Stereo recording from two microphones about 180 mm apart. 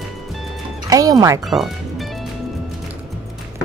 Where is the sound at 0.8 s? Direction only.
20° right (ahead or behind).